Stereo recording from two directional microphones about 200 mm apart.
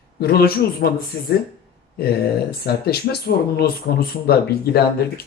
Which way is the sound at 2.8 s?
50° left (ahead or behind).